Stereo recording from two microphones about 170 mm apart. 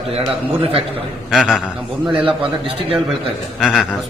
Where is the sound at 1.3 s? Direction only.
Centre (ahead or behind).